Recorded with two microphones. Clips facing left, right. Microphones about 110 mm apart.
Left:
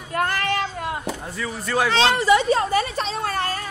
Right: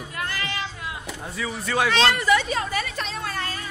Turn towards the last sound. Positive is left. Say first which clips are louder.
# left 6 dB
turn(degrees=45)  # may be behind; listen again after turning